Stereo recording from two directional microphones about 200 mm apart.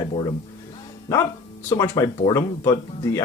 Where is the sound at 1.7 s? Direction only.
15° left (ahead or behind).